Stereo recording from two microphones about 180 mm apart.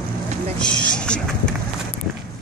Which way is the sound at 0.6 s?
5° left (ahead or behind).